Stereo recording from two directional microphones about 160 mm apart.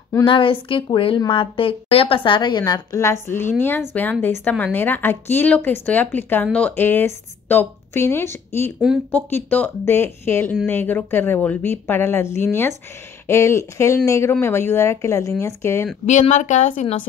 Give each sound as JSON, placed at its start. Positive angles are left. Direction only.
{"t": 0.2, "sound": "a woman's voice", "side_deg": 30}
{"t": 16.1, "sound": "speech", "side_deg": 50}